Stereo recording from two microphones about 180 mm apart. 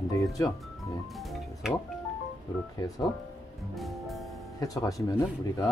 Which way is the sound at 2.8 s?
20° left (ahead or behind).